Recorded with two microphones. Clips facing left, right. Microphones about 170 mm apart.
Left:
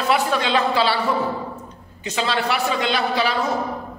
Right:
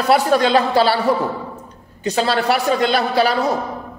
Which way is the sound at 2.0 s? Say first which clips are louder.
Right 5 dB; 40° right (ahead or behind).